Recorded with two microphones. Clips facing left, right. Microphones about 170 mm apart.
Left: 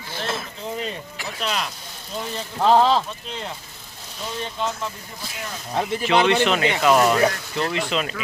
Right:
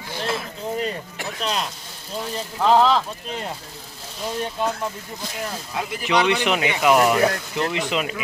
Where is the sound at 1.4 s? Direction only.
35° right (ahead or behind).